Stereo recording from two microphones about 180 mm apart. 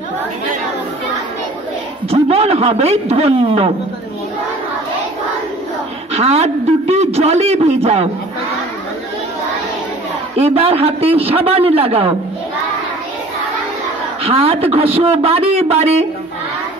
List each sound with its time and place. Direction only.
2.0 s a man's voice: 35° right (ahead or behind)
6.1 s a man's voice: 35° right (ahead or behind)
10.3 s a man's voice: 35° right (ahead or behind)
14.2 s a man's voice: 35° right (ahead or behind)